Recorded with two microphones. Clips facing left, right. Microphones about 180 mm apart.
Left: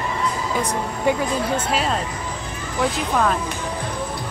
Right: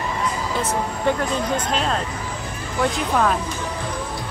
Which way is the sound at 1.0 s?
10° left (ahead or behind).